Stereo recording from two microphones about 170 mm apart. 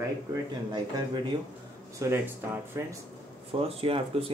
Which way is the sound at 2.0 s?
15° right (ahead or behind).